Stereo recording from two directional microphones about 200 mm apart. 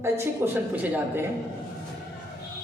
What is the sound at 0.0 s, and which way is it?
A man's voice, 10° right (ahead or behind).